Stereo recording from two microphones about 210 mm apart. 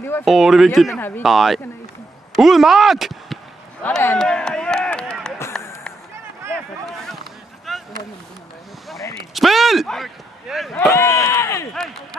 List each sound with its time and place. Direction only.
0.2 s speech: centre (ahead or behind)
3.8 s a sound: 10° left (ahead or behind)
7.7 s a sound: centre (ahead or behind)
9.3 s speech: centre (ahead or behind)
10.9 s speech: 15° left (ahead or behind)
11.7 s speech: centre (ahead or behind)